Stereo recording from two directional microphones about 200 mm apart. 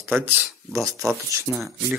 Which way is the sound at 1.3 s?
5° right (ahead or behind).